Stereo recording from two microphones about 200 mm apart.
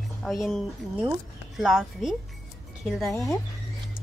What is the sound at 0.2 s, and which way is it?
Speech, centre (ahead or behind).